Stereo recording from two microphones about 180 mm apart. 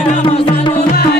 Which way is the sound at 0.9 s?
60° left (ahead or behind).